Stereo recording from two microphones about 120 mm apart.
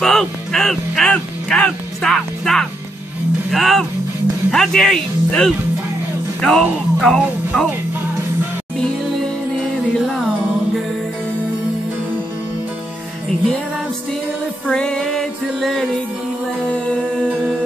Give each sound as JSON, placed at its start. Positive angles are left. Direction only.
{"t": 0.0, "sound": "speech", "side_deg": 5}
{"t": 3.5, "sound": "music", "side_deg": 0}
{"t": 14.7, "sound": "music", "side_deg": 5}
{"t": 17.3, "sound": "music", "side_deg": -10}